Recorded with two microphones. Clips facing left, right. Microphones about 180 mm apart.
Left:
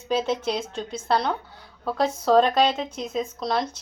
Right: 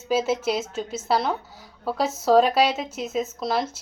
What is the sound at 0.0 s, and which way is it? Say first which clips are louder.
A woman's voice: right 1 dB; 5° right (ahead or behind).